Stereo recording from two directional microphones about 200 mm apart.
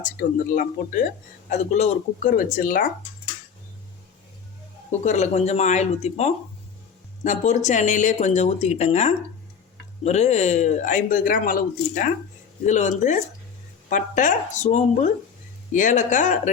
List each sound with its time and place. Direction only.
0.0 s speech: 45° left (ahead or behind)
4.9 s speech: 35° left (ahead or behind)